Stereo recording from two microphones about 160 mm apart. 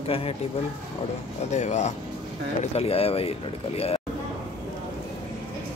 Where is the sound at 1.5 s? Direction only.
45° left (ahead or behind).